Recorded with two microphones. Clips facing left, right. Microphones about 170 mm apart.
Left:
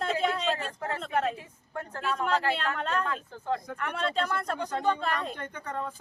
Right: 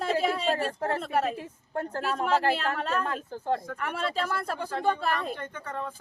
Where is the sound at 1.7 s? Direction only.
40° right (ahead or behind).